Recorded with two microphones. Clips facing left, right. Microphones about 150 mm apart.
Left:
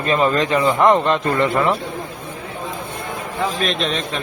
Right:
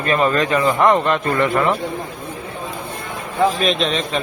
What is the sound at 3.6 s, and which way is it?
Speech, centre (ahead or behind).